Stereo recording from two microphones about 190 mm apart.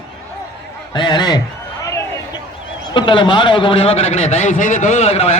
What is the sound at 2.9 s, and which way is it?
A man's voice, 25° left (ahead or behind).